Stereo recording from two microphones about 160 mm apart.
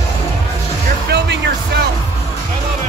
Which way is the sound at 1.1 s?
90° right.